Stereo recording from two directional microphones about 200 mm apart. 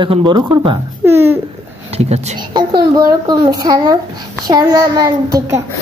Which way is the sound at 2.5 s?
20° right (ahead or behind).